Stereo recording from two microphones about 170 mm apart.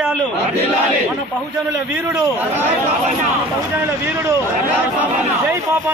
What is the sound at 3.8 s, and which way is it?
Speech, 15° right (ahead or behind).